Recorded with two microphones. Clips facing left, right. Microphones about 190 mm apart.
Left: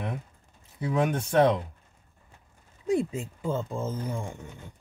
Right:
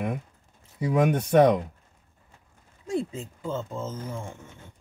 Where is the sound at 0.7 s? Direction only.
10° right (ahead or behind).